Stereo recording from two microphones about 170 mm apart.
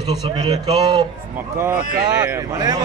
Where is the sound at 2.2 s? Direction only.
20° right (ahead or behind).